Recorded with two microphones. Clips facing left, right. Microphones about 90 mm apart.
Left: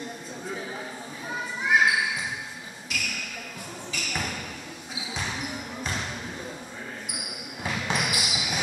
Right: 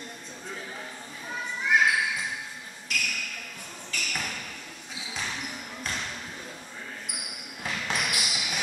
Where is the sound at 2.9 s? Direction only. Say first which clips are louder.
Right 1 dB; 5° left (ahead or behind).